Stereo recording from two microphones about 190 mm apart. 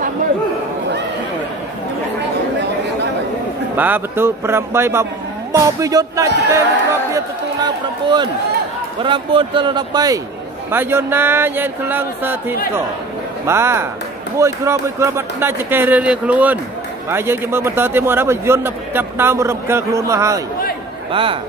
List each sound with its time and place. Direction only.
3.7 s a man's voice: 10° right (ahead or behind)
21.1 s speech: 25° right (ahead or behind)